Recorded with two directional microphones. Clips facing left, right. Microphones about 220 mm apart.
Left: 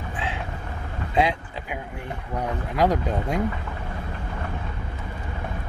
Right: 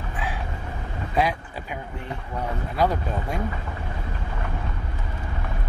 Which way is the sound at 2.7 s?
15° left (ahead or behind).